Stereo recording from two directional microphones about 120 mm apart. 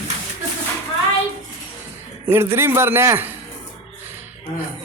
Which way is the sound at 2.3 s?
20° right (ahead or behind).